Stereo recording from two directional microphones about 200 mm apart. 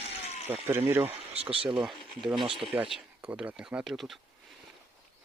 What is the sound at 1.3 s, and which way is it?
Speech, 30° right (ahead or behind).